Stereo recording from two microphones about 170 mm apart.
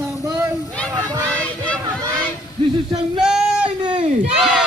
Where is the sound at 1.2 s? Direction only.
5° left (ahead or behind).